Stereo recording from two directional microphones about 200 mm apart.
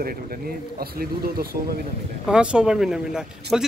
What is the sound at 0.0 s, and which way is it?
Speech, 50° right (ahead or behind).